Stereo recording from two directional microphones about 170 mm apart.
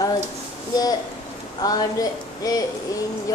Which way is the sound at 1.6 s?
20° left (ahead or behind).